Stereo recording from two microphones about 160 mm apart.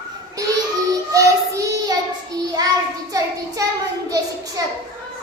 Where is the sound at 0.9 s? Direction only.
20° right (ahead or behind).